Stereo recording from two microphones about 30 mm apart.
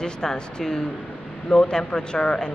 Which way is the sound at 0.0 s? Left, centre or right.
Left.